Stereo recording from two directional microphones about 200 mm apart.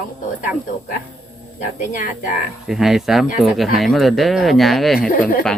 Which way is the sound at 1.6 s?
45° left (ahead or behind).